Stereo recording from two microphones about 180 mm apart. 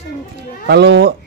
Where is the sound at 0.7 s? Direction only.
65° right (ahead or behind).